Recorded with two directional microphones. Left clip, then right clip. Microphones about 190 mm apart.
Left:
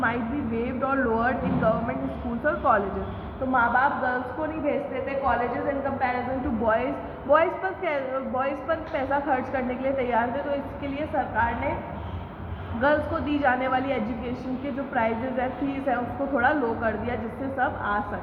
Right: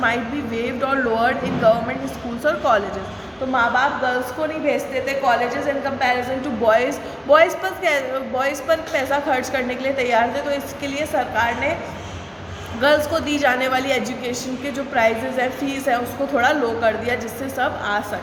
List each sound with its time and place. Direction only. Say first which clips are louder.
0.6 s a woman's voice: right 5 dB; 10° right (ahead or behind)
7.3 s a woman's voice: right 7 dB; 10° right (ahead or behind)
12.8 s a woman's voice: right 6 dB; 10° right (ahead or behind)